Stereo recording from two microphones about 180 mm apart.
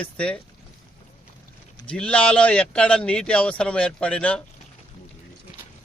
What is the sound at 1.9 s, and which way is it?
Speech, 5° left (ahead or behind).